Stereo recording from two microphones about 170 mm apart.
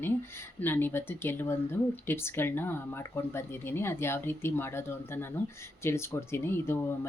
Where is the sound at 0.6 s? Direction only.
10° left (ahead or behind).